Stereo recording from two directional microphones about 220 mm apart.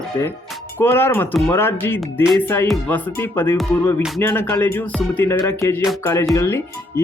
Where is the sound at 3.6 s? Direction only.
Centre (ahead or behind).